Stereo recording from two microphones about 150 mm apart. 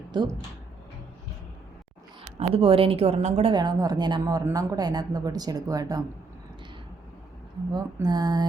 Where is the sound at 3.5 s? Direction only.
25° right (ahead or behind).